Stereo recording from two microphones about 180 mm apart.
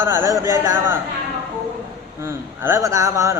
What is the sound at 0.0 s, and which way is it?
Speech, 15° right (ahead or behind).